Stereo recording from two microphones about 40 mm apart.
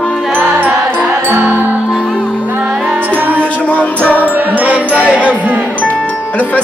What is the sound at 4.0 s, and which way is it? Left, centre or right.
Music, left.